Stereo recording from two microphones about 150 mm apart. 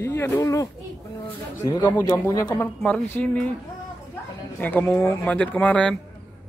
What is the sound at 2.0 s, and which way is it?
Speech, 20° left (ahead or behind).